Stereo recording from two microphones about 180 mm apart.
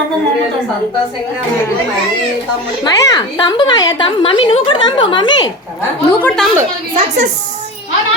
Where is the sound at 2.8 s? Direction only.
20° left (ahead or behind).